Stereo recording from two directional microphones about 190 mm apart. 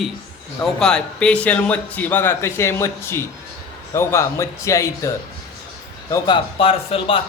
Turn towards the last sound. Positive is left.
turn(degrees=30)  # may be behind; listen again after turning